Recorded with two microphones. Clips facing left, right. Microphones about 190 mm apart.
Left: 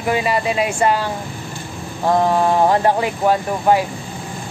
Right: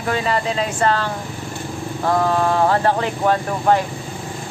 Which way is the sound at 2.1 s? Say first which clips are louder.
Left 2 dB; 15° left (ahead or behind).